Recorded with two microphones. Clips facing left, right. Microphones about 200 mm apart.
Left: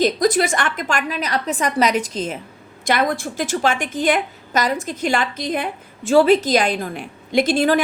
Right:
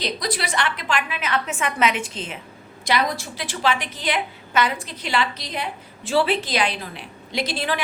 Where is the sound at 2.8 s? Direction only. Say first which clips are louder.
Left 4 dB; 50° left (ahead or behind).